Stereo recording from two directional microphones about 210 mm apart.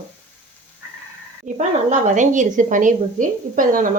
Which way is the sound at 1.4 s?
35° right (ahead or behind).